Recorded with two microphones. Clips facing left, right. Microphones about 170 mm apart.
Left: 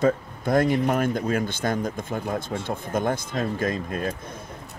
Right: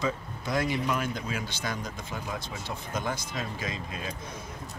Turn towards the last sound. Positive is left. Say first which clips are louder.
# left 9 dB
turn(degrees=50)  # may be behind; listen again after turning